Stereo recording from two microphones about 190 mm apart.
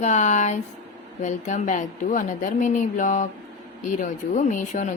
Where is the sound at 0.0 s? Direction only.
40° left (ahead or behind).